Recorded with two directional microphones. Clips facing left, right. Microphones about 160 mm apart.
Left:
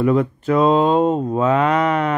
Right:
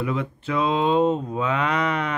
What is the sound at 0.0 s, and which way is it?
Speech, 45° left (ahead or behind).